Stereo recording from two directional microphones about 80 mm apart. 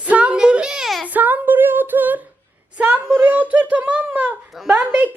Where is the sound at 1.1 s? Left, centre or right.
Right.